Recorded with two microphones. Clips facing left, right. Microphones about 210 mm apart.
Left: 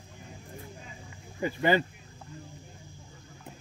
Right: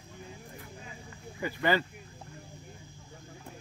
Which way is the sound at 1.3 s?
20° left (ahead or behind).